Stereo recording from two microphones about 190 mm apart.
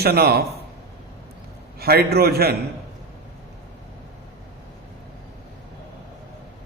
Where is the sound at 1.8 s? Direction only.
55° right (ahead or behind).